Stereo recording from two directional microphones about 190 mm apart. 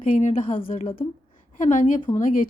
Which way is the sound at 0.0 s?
40° left (ahead or behind).